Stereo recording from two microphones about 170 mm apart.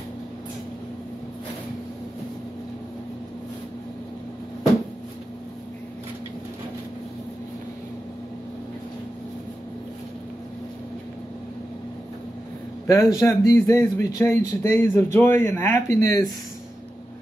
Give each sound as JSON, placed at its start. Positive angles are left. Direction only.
{"t": 12.8, "sound": "speech", "side_deg": 20}